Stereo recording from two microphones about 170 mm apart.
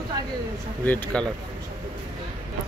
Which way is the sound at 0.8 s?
10° left (ahead or behind).